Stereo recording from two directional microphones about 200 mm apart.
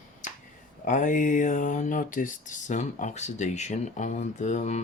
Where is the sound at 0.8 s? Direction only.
40° left (ahead or behind).